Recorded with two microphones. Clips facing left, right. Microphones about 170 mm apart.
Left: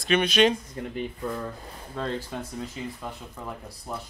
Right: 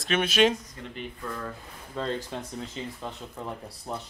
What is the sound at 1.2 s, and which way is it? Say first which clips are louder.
Speech: left 2 dB; 20° left (ahead or behind).